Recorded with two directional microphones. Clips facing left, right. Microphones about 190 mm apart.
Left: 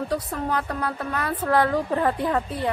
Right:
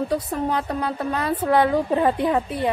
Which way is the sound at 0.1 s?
20° right (ahead or behind).